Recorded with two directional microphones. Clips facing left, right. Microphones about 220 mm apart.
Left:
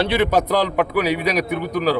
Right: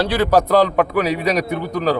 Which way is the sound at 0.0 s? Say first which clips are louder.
Right 2 dB; 20° left (ahead or behind).